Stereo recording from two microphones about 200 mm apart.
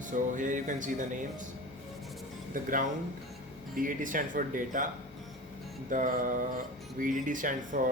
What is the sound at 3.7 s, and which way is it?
Speech, 40° right (ahead or behind).